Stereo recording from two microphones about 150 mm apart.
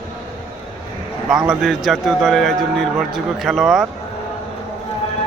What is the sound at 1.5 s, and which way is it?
A man's voice, centre (ahead or behind).